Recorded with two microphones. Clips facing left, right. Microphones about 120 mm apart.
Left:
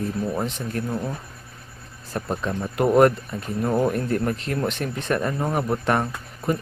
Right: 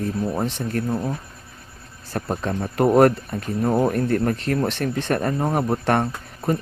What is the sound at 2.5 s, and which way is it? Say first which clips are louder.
Speech: right 2 dB; 40° right (ahead or behind).